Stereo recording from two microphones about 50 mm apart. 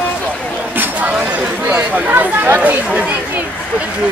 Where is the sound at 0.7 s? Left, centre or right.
Right.